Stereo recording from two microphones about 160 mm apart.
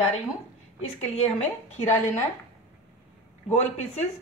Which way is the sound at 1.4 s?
50° left (ahead or behind).